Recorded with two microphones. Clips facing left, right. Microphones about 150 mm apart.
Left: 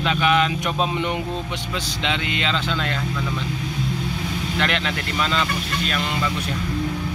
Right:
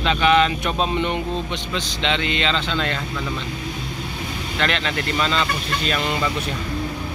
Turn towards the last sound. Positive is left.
turn(degrees=10)  # may be behind; listen again after turning